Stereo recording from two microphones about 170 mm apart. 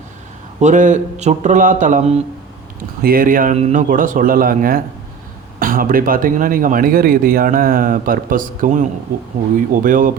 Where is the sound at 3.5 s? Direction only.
45° right (ahead or behind).